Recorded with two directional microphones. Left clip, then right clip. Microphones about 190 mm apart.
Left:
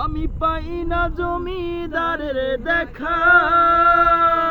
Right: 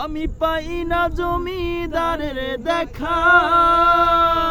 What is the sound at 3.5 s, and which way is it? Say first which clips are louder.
Music: even; 75° right (ahead or behind).